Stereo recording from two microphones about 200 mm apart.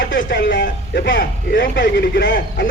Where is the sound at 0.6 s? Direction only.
60° left (ahead or behind).